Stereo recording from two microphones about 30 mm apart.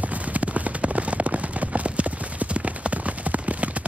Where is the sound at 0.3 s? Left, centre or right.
Right.